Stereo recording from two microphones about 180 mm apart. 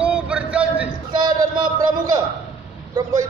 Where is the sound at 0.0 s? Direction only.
5° right (ahead or behind).